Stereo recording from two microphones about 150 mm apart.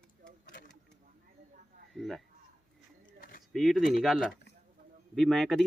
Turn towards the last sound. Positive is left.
turn(degrees=0)  # may be behind; listen again after turning